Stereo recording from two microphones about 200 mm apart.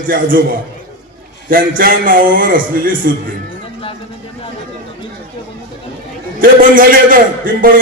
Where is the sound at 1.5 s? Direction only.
45° right (ahead or behind).